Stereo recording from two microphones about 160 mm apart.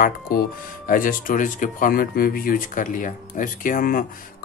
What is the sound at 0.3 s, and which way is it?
Speech, 70° left (ahead or behind).